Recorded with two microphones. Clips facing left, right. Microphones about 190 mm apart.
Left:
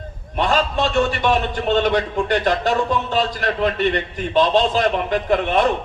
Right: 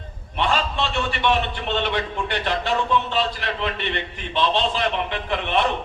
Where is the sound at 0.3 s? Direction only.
45° left (ahead or behind).